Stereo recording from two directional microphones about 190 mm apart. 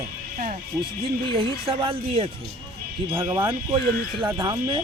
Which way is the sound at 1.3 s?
30° right (ahead or behind).